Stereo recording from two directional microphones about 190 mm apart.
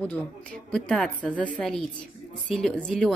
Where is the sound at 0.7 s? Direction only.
5° left (ahead or behind).